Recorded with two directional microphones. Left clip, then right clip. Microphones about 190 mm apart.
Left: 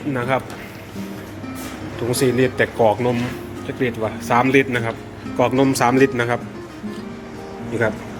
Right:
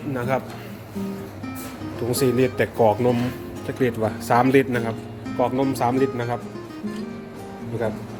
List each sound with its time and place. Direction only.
0.1 s a man's voice: 15° right (ahead or behind)
2.0 s speech: 20° right (ahead or behind)
3.8 s a man's voice: 35° right (ahead or behind)
5.4 s speech: centre (ahead or behind)